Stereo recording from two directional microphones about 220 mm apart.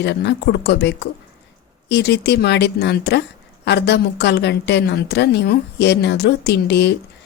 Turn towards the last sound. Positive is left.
turn(degrees=50)  # may be behind; listen again after turning